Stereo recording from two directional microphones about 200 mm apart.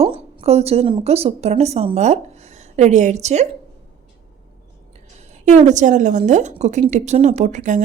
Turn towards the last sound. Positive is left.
turn(degrees=-35)  # may be behind; listen again after turning